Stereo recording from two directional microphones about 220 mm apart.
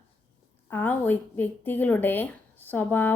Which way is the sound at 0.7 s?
10° left (ahead or behind).